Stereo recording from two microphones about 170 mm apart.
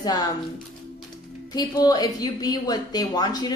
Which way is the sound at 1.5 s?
25° left (ahead or behind).